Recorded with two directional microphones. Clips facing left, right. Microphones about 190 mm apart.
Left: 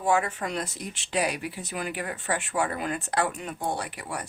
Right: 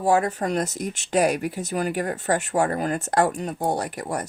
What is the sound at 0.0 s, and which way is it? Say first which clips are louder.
Speech: right 5 dB; 40° right (ahead or behind).